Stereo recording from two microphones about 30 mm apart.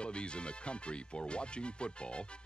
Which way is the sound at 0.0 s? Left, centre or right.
Left.